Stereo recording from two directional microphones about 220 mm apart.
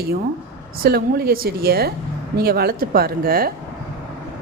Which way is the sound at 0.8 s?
45° right (ahead or behind).